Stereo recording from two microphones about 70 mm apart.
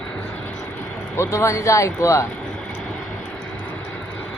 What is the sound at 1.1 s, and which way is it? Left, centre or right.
Speech, left.